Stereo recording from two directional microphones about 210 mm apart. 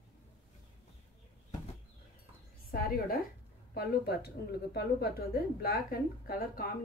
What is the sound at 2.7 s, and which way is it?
A woman's voice, 45° left (ahead or behind).